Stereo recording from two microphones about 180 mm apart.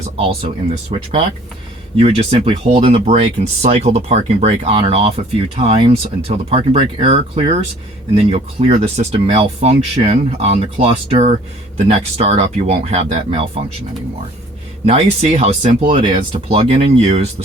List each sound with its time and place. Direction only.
0.2 s speech: 35° right (ahead or behind)
14.8 s speech: 35° right (ahead or behind)